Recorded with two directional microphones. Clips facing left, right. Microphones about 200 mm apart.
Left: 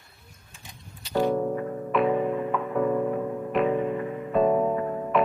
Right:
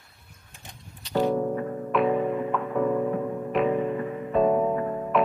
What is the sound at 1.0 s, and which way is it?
Music, 5° left (ahead or behind).